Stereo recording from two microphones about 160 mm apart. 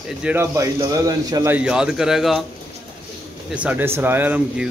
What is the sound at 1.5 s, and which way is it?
Speech, 5° right (ahead or behind).